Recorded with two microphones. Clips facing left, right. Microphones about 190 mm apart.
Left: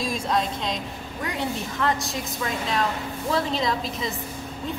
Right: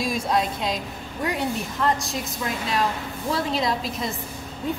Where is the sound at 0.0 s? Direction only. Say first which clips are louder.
Right 2 dB; 5° right (ahead or behind).